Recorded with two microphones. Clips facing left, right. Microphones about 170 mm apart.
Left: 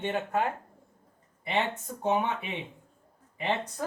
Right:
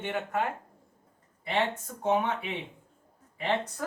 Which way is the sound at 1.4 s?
20° left (ahead or behind).